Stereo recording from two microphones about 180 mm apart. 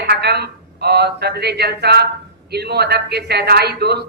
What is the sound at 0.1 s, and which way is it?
Speech, 65° right (ahead or behind).